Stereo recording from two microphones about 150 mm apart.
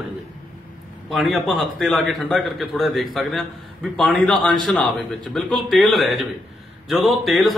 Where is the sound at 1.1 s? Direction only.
Centre (ahead or behind).